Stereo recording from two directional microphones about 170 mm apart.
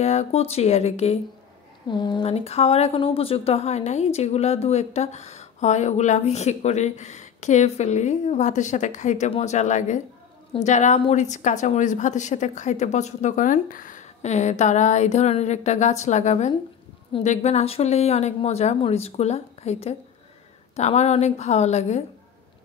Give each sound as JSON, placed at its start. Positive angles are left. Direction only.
{"t": 0.0, "sound": "speech", "side_deg": 40}
{"t": 1.9, "sound": "a woman's voice", "side_deg": 25}